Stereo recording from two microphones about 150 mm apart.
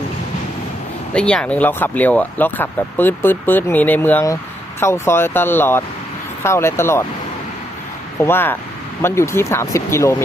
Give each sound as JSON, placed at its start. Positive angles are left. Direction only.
{"t": 1.1, "sound": "speech", "side_deg": 5}
{"t": 8.2, "sound": "speech", "side_deg": 15}